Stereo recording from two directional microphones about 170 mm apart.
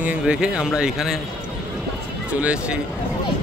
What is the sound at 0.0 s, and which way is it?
A man's voice, 5° right (ahead or behind).